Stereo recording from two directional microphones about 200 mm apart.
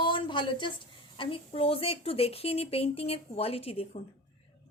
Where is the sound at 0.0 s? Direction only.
25° left (ahead or behind).